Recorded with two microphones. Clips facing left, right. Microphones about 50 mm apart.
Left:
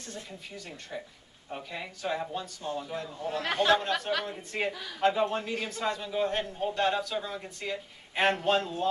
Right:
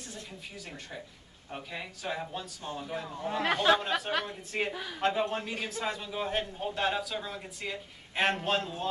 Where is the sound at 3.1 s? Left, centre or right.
Centre.